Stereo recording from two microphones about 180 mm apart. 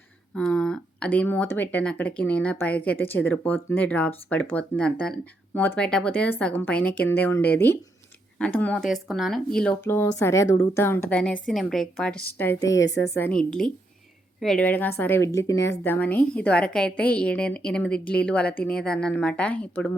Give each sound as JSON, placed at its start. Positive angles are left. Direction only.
{"t": 0.3, "sound": "speech", "side_deg": 5}
{"t": 12.7, "sound": "a woman's voice", "side_deg": 80}
{"t": 13.1, "sound": "speech", "side_deg": 10}